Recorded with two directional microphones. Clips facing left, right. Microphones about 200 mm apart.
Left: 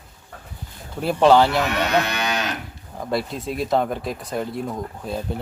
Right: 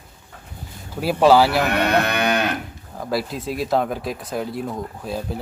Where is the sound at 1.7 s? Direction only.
55° right (ahead or behind).